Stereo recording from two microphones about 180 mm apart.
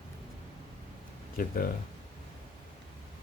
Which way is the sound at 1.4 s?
55° left (ahead or behind).